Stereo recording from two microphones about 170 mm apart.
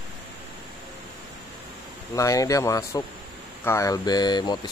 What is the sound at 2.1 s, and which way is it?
Speech, 20° left (ahead or behind).